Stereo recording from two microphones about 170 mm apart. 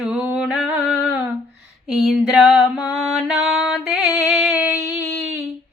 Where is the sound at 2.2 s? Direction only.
5° right (ahead or behind).